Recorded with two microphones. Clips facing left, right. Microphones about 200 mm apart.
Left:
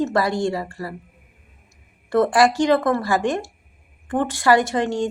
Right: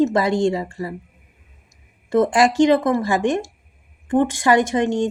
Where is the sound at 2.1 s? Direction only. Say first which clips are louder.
Right 1 dB; 20° right (ahead or behind).